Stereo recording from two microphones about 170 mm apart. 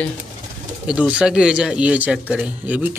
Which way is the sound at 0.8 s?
5° right (ahead or behind).